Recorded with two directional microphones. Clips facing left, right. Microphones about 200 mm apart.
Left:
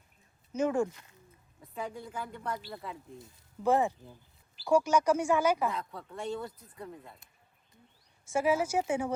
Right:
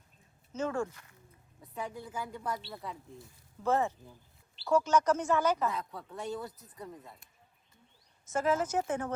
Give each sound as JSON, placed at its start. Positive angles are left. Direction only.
{"t": 0.5, "sound": "speech", "side_deg": 15}
{"t": 1.6, "sound": "a woman's voice", "side_deg": 0}
{"t": 3.2, "sound": "speech", "side_deg": 15}
{"t": 5.6, "sound": "speech", "side_deg": 0}
{"t": 8.3, "sound": "speech", "side_deg": 10}